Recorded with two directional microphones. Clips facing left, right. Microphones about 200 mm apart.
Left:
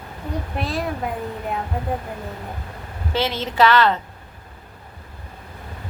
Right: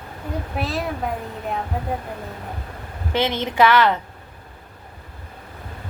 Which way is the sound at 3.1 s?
15° right (ahead or behind).